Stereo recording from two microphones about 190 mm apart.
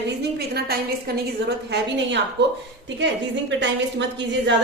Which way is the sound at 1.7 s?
70° right (ahead or behind).